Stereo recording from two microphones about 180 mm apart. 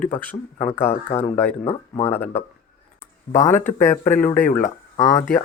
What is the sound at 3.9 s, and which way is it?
Speech, 45° left (ahead or behind).